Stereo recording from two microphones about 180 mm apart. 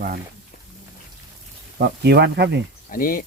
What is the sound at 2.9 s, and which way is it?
Speech, 50° left (ahead or behind).